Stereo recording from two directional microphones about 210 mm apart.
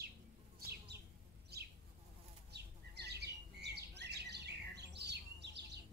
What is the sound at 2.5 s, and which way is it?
Bird, 50° right (ahead or behind).